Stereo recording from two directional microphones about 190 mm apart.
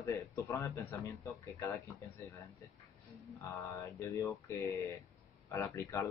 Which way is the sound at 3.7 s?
15° left (ahead or behind).